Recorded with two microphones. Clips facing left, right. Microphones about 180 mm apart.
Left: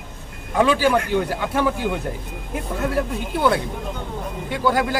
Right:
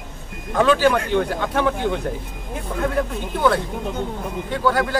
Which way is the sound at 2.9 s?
10° left (ahead or behind).